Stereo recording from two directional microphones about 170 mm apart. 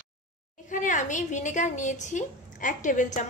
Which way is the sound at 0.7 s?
50° left (ahead or behind).